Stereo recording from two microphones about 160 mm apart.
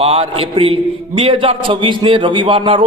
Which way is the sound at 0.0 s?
40° right (ahead or behind).